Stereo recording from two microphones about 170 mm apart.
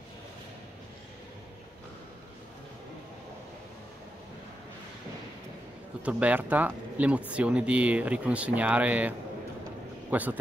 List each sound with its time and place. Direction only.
6.0 s speech: 10° right (ahead or behind)
10.1 s speech: 10° right (ahead or behind)